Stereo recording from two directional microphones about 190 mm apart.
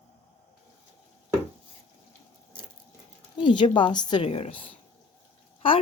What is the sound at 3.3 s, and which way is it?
A woman's voice, 25° left (ahead or behind).